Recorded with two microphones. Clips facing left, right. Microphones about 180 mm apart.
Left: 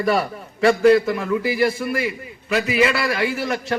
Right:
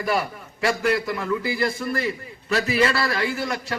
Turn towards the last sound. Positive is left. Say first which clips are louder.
# left 3 dB
turn(degrees=20)  # may be behind; listen again after turning